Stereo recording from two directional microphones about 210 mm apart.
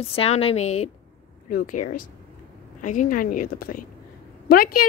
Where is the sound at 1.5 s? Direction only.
40° left (ahead or behind).